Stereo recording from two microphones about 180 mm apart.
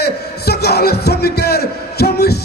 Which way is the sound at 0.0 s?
65° left (ahead or behind).